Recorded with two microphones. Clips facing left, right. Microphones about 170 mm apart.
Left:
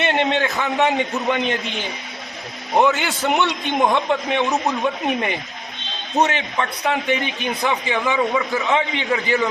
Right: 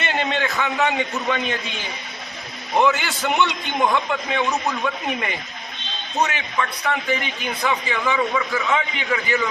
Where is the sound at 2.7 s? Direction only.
20° left (ahead or behind).